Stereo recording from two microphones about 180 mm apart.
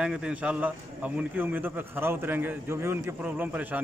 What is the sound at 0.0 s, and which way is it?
A man's voice, 5° right (ahead or behind).